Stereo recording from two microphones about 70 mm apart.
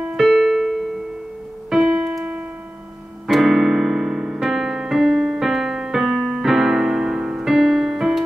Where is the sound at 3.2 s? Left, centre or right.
Centre.